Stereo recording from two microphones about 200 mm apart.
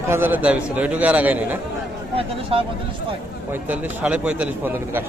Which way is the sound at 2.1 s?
30° right (ahead or behind).